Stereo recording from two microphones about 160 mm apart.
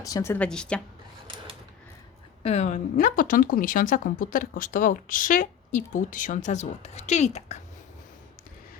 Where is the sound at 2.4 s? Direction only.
45° left (ahead or behind).